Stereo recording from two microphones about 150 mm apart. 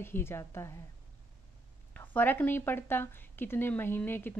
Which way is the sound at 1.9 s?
10° left (ahead or behind).